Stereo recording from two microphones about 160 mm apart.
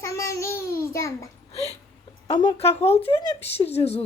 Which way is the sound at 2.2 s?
30° left (ahead or behind).